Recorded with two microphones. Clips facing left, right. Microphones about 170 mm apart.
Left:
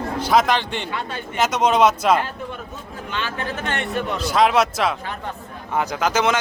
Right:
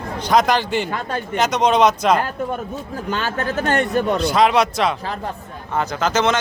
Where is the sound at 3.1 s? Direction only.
45° right (ahead or behind).